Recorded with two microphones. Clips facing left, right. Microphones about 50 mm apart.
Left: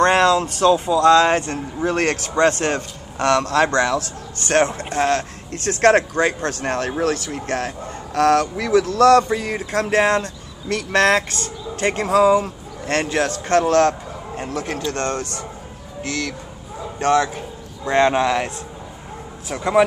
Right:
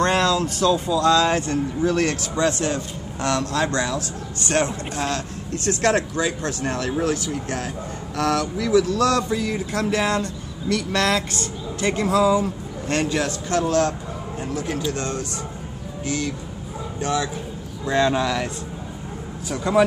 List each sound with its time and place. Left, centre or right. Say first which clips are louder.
0.0 s speech: left 4 dB; left
17.8 s speech: left 4 dB; left
19.5 s speech: left 2 dB; left